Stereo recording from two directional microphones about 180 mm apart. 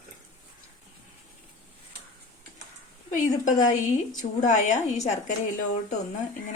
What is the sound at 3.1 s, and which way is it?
A woman's voice, 45° left (ahead or behind).